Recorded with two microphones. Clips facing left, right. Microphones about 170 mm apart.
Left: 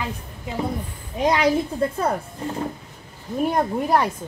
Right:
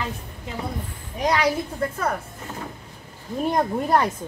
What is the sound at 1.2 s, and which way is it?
Speech, 25° left (ahead or behind).